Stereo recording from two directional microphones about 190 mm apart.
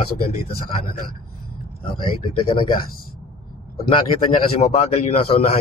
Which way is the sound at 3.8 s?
30° left (ahead or behind).